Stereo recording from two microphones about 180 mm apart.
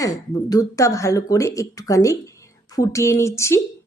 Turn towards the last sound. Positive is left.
turn(degrees=15)  # may be behind; listen again after turning